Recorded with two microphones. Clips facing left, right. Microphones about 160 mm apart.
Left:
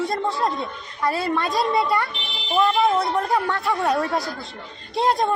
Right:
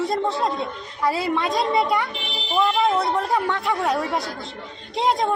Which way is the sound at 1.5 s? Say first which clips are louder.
Even; 20° right (ahead or behind).